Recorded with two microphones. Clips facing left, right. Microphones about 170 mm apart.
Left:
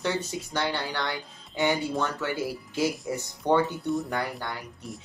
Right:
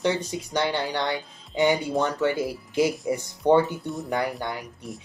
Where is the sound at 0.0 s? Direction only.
20° right (ahead or behind).